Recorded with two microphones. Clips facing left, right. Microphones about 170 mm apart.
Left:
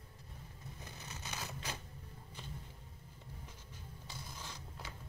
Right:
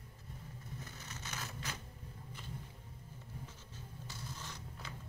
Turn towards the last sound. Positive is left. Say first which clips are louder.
# even
turn(degrees=10)  # may be behind; listen again after turning